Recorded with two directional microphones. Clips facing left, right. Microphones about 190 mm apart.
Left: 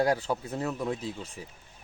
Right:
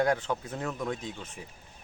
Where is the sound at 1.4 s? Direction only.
35° left (ahead or behind).